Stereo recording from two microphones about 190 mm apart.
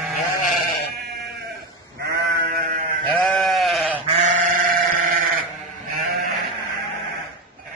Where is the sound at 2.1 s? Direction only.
50° right (ahead or behind).